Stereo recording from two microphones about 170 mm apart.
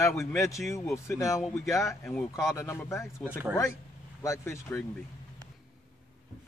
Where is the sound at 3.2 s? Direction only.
10° right (ahead or behind).